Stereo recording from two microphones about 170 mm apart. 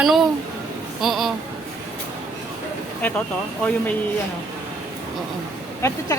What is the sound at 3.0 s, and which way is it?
Speech, 10° left (ahead or behind).